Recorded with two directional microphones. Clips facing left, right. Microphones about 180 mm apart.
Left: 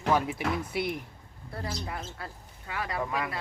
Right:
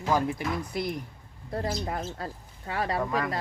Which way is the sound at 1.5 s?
40° right (ahead or behind).